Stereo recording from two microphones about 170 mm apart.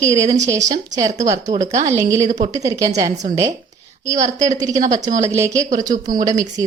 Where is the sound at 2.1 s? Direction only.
45° right (ahead or behind).